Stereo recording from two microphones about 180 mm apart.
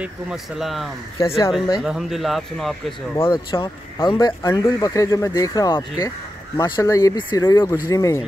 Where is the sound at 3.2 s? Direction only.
30° left (ahead or behind).